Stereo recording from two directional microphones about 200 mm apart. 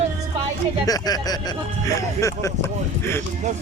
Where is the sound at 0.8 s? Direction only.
20° left (ahead or behind).